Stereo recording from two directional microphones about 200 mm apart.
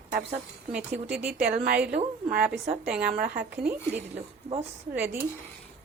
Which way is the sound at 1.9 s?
50° right (ahead or behind).